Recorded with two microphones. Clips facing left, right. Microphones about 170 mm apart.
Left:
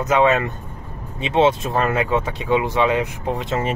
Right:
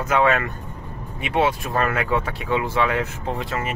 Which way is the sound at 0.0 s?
20° left (ahead or behind).